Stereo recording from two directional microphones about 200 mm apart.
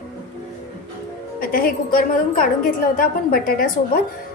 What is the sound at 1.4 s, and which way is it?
A woman's voice, 45° left (ahead or behind).